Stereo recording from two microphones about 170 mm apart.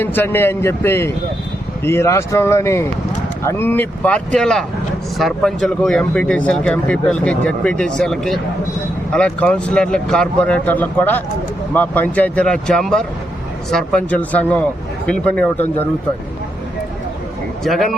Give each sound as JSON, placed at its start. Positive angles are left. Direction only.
{"t": 0.0, "sound": "speech", "side_deg": 10}
{"t": 17.6, "sound": "speech", "side_deg": 0}